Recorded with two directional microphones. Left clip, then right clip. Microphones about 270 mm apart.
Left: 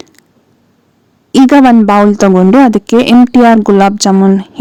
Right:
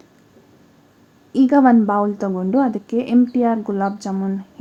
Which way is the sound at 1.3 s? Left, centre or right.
Left.